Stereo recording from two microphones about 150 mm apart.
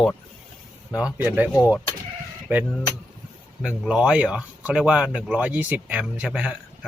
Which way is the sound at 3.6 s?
5° right (ahead or behind).